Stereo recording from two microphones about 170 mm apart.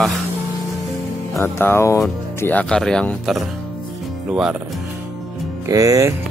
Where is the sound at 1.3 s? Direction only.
15° left (ahead or behind).